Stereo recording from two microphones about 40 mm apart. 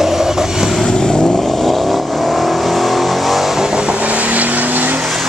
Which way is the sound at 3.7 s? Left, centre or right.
Right.